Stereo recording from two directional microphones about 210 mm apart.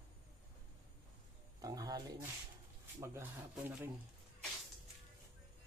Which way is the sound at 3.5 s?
5° right (ahead or behind).